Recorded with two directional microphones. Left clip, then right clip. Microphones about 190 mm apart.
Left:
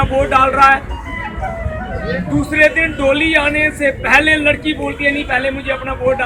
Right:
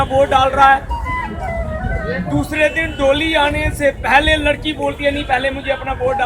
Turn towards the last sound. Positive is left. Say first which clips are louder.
# left 2 dB
turn(degrees=-30)  # may be behind; listen again after turning